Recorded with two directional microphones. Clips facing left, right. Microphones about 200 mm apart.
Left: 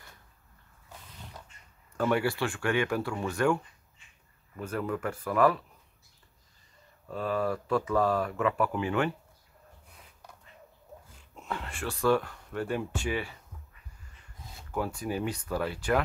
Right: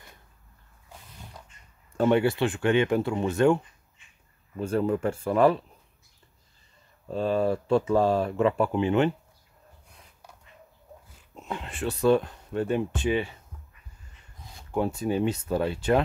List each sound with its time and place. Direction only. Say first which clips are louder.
2.0 s speech: right 5 dB; 25° right (ahead or behind)
7.1 s speech: right 5 dB; 25° right (ahead or behind)
11.3 s speech: right 2 dB; 20° right (ahead or behind)
14.7 s speech: right 6 dB; 25° right (ahead or behind)